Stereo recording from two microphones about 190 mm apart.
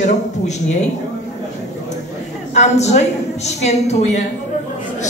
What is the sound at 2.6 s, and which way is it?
A woman's voice, 35° left (ahead or behind).